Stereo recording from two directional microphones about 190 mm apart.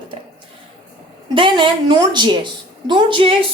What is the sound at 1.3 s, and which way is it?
Speech, 25° right (ahead or behind).